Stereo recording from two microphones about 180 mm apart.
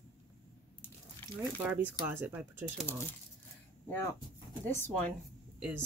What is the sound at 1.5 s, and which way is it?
Speech, 10° right (ahead or behind).